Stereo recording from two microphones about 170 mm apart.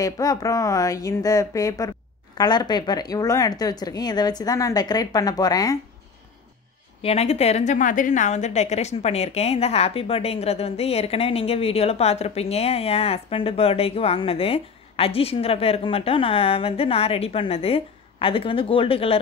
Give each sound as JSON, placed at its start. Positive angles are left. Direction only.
{"t": 0.0, "sound": "speech", "side_deg": 20}
{"t": 7.0, "sound": "a woman's voice", "side_deg": 35}